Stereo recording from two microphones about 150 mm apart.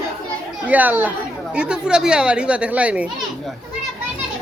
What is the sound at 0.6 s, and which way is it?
A woman's voice, 10° right (ahead or behind).